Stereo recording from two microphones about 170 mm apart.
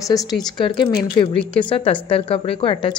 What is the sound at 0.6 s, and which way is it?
A woman's voice, 30° left (ahead or behind).